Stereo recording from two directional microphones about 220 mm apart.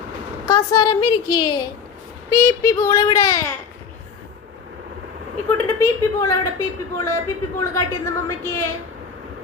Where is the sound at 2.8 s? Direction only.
20° left (ahead or behind).